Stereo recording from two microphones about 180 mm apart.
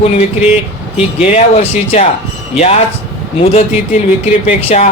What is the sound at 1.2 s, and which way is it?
Speech, 35° left (ahead or behind).